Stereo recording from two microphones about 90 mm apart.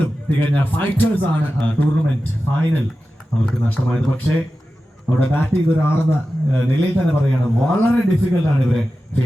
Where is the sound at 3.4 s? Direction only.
15° left (ahead or behind).